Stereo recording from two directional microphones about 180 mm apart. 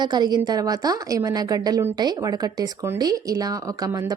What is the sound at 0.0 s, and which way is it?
Speech, 25° right (ahead or behind).